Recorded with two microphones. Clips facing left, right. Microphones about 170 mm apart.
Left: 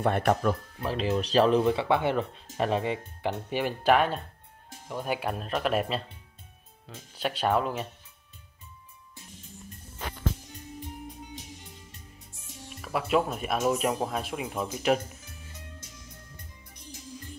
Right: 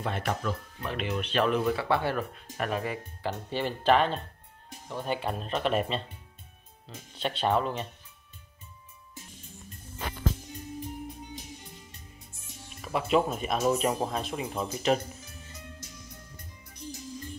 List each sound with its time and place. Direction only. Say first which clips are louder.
0.0 s speech: left 7 dB; 60° left (ahead or behind)
0.7 s speech: left 4 dB; 30° left (ahead or behind); by 6.0 s 5° left (ahead or behind)
7.2 s speech: left 1 dB; 5° left (ahead or behind)
12.6 s speech: even; 5° left (ahead or behind)